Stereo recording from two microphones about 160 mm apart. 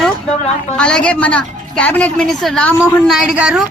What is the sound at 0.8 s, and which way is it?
A woman's voice, 5° left (ahead or behind).